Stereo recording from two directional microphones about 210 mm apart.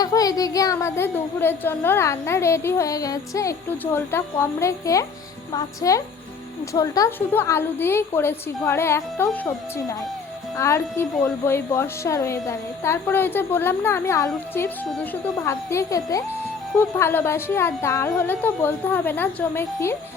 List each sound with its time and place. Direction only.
0.0 s a woman's voice: 15° left (ahead or behind)